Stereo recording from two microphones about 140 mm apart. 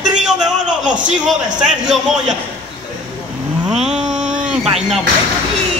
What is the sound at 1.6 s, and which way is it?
Speech, 5° right (ahead or behind).